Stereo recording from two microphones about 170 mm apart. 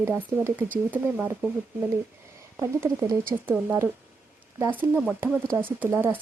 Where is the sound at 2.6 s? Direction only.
15° right (ahead or behind).